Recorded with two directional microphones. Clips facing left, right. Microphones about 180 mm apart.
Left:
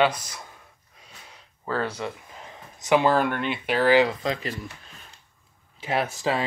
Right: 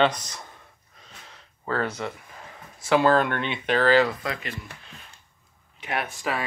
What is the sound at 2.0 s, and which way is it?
Speech, 20° left (ahead or behind).